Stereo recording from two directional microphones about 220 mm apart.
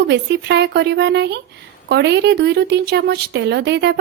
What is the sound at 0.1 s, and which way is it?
Speech, 50° right (ahead or behind).